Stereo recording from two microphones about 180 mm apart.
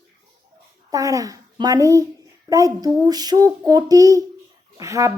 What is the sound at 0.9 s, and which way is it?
A woman's voice, 20° right (ahead or behind).